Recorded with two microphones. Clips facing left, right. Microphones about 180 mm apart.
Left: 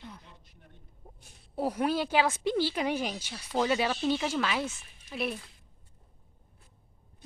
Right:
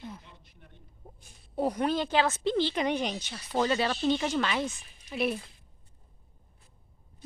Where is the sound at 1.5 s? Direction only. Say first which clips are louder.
Right 1 dB; 5° left (ahead or behind).